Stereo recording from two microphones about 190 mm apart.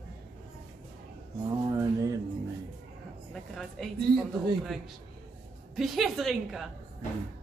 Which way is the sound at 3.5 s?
Centre (ahead or behind).